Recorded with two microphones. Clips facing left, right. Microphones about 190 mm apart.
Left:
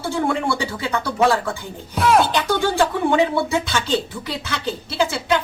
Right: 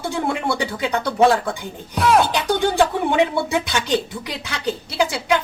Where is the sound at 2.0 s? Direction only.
Centre (ahead or behind).